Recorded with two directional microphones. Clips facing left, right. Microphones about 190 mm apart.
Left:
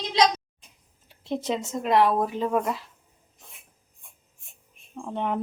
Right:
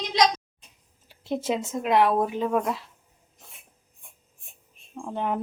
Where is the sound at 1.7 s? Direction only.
5° right (ahead or behind).